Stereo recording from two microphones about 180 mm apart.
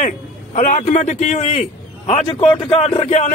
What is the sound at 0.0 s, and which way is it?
A man's voice, 40° left (ahead or behind).